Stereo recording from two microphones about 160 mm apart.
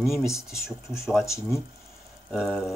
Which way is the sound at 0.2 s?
20° left (ahead or behind).